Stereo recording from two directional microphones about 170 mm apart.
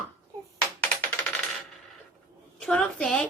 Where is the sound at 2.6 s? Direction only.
5° left (ahead or behind).